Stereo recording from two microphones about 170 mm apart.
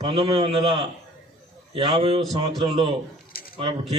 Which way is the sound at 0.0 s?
30° right (ahead or behind).